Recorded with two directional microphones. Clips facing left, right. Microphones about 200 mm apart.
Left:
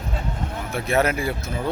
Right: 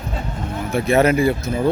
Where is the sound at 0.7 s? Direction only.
Centre (ahead or behind).